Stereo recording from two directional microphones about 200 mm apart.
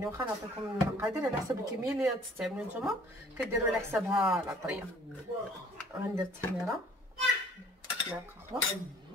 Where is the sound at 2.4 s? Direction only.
5° right (ahead or behind).